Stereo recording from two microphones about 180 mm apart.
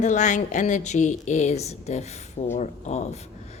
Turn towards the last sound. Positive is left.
turn(degrees=40)  # may be behind; listen again after turning